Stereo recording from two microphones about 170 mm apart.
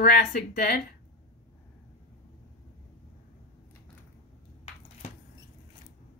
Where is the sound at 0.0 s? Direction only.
70° left (ahead or behind).